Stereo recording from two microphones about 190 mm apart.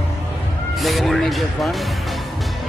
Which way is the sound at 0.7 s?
Centre (ahead or behind).